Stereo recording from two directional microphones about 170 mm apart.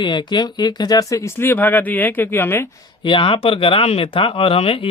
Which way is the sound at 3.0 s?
30° left (ahead or behind).